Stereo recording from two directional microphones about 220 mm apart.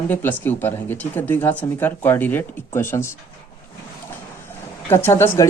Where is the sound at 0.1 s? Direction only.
10° left (ahead or behind).